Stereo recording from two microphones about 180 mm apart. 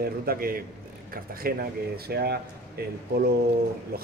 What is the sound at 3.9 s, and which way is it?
Speech, 55° right (ahead or behind).